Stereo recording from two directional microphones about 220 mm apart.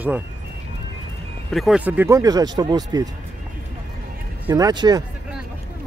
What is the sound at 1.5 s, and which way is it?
Speech, centre (ahead or behind).